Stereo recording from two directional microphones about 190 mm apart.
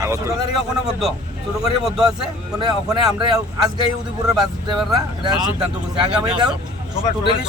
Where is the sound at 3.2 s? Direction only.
25° right (ahead or behind).